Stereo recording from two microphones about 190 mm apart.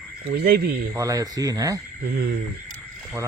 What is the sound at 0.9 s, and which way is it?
Speech, 15° right (ahead or behind).